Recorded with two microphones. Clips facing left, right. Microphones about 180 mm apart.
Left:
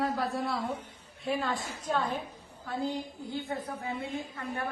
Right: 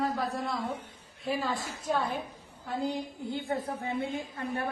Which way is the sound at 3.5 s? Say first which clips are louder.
Right 3 dB; 25° right (ahead or behind).